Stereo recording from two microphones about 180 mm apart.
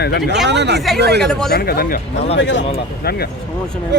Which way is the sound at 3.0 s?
60° left (ahead or behind).